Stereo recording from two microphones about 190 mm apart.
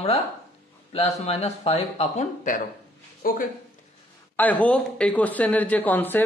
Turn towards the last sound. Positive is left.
turn(degrees=10)  # may be behind; listen again after turning